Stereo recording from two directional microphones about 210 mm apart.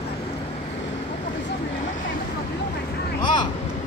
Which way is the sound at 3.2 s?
20° left (ahead or behind).